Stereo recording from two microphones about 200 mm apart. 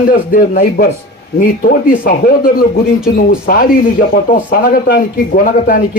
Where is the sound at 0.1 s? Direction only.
45° left (ahead or behind).